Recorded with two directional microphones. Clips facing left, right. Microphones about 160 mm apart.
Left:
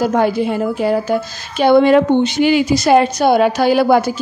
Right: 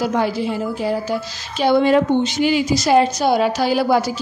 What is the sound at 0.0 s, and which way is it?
A woman's voice, 50° left (ahead or behind).